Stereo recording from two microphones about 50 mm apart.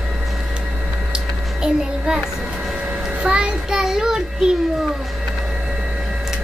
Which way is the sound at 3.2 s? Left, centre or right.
Centre.